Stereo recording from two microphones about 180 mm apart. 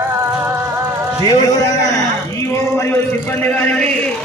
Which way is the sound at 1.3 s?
20° left (ahead or behind).